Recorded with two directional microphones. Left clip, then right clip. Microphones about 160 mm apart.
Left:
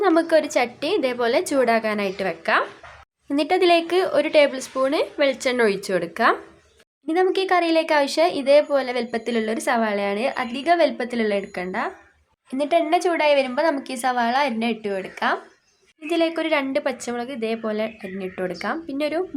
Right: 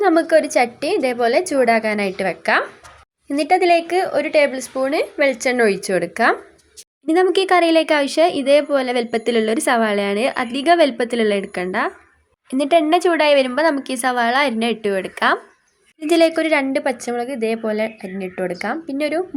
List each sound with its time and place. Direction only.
0.0 s speech: 15° right (ahead or behind)
3.3 s speech: 5° right (ahead or behind)